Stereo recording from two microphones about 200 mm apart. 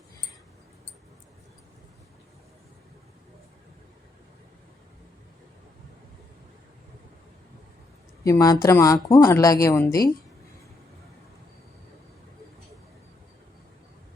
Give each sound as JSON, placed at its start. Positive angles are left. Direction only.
{"t": 8.2, "sound": "speech", "side_deg": 15}